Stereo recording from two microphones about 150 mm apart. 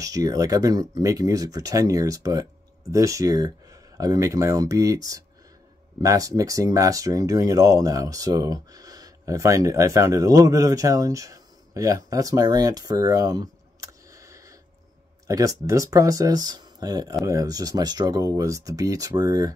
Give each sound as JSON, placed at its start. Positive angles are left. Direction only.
{"t": 0.0, "sound": "speech", "side_deg": -25}